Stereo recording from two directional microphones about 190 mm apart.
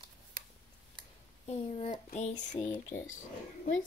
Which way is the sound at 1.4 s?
35° left (ahead or behind).